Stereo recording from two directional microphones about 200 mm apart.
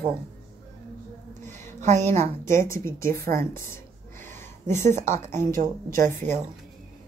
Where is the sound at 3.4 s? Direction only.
15° left (ahead or behind).